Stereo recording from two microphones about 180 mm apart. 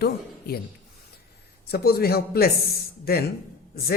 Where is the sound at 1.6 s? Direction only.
60° left (ahead or behind).